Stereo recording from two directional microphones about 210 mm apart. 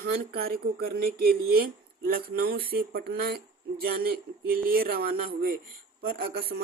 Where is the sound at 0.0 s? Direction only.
45° right (ahead or behind).